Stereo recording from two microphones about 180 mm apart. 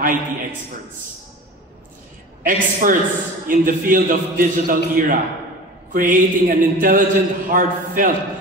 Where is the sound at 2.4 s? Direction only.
50° right (ahead or behind).